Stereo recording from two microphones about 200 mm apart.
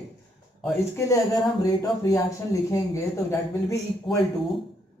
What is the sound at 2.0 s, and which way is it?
Speech, 15° left (ahead or behind).